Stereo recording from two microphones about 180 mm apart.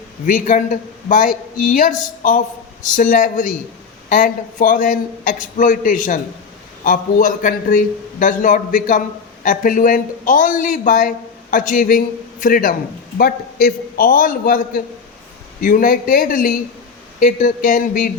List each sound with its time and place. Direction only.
0.3 s a man's voice: 45° left (ahead or behind)